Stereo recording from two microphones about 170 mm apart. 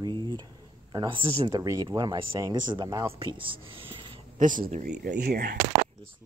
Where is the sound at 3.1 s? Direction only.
30° right (ahead or behind).